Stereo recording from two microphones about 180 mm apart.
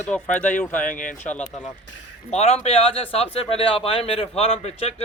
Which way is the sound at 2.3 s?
35° left (ahead or behind).